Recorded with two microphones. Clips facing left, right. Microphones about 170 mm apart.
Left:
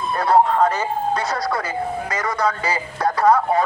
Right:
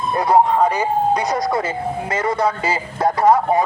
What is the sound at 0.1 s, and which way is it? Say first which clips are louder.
A man's voice: right 1 dB; 15° right (ahead or behind).